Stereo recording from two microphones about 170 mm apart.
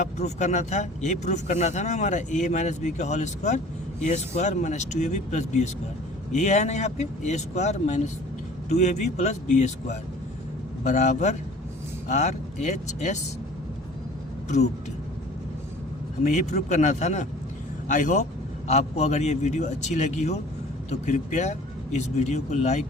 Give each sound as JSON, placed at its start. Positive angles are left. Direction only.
{"t": 0.0, "sound": "speech", "side_deg": 45}
{"t": 16.2, "sound": "speech", "side_deg": 45}